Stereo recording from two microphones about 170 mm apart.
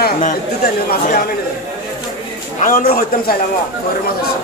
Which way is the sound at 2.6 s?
60° left (ahead or behind).